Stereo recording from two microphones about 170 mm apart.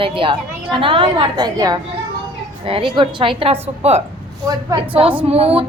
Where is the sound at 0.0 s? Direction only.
30° right (ahead or behind).